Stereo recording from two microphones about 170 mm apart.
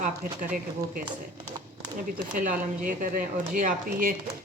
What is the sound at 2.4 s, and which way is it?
Speech, 50° right (ahead or behind).